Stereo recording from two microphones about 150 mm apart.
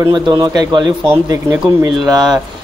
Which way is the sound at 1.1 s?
15° right (ahead or behind).